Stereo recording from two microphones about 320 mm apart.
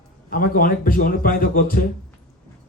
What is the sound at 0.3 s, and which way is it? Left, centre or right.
A man's voice, left.